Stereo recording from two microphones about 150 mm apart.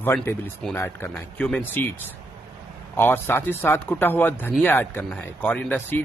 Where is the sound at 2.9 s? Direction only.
15° left (ahead or behind).